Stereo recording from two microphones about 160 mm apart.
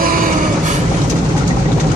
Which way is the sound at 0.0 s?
60° right (ahead or behind).